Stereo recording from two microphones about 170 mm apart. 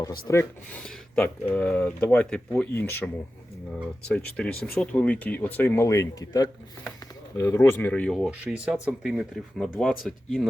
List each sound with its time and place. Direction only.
0.3 s speech: 15° left (ahead or behind)
0.8 s speech: 5° left (ahead or behind)